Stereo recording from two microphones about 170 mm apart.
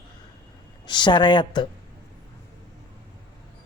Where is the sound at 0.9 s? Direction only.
25° left (ahead or behind).